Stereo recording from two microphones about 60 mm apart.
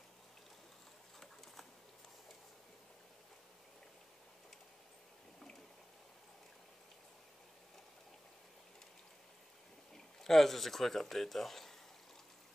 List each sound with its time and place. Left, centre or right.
9.9 s speech: centre